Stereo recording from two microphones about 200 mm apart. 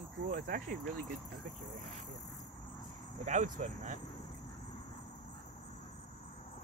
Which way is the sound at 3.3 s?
40° right (ahead or behind).